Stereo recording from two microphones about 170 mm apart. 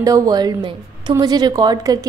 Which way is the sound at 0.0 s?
20° right (ahead or behind).